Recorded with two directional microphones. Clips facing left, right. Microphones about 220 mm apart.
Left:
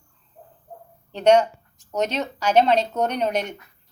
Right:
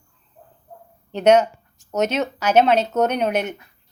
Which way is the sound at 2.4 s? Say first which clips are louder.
Right 1 dB; 5° right (ahead or behind).